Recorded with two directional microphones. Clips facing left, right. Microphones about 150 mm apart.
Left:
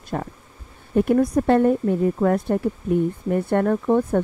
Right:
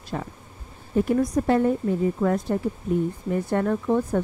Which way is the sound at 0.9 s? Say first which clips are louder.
Left 4 dB; 60° left (ahead or behind).